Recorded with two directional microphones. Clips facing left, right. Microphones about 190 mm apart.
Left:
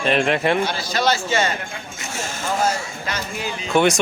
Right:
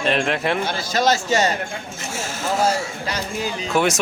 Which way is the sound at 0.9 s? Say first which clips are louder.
Right 5 dB; 45° right (ahead or behind).